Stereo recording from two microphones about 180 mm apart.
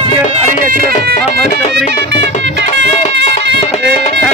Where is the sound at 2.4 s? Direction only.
80° right.